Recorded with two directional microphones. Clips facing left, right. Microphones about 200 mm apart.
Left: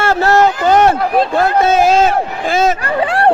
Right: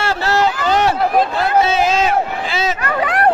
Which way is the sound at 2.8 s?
30° left (ahead or behind).